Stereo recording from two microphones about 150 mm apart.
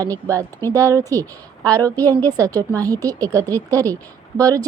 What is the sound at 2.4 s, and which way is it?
Speech, 25° right (ahead or behind).